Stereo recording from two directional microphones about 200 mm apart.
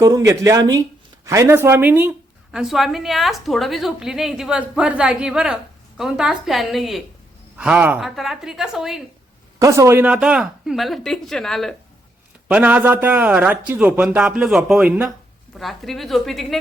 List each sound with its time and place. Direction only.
0.0 s a man's voice: 15° right (ahead or behind)
9.6 s a man's voice: 15° right (ahead or behind); by 16.6 s centre (ahead or behind)